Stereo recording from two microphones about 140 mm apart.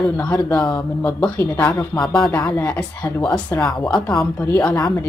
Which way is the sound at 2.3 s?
15° left (ahead or behind).